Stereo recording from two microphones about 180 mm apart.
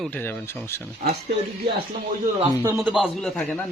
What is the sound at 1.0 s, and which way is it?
Speech, 50° right (ahead or behind).